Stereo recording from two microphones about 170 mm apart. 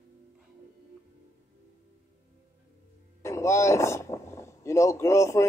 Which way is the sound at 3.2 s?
15° left (ahead or behind).